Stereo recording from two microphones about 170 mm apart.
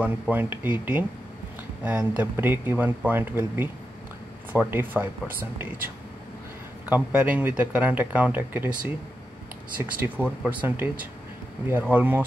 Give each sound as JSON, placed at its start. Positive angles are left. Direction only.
{"t": 0.0, "sound": "speech", "side_deg": -10}
{"t": 6.9, "sound": "speech", "side_deg": -10}